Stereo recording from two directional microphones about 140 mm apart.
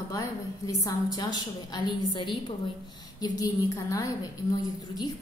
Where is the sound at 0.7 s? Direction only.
25° left (ahead or behind).